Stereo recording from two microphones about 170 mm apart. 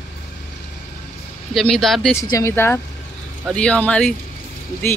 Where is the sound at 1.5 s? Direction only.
Centre (ahead or behind).